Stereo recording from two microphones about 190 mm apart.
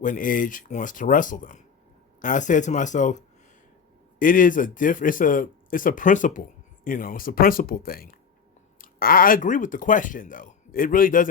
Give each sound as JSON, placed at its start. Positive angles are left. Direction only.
{"t": 0.0, "sound": "speech", "side_deg": 45}